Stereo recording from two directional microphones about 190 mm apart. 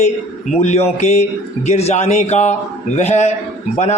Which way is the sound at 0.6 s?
35° left (ahead or behind).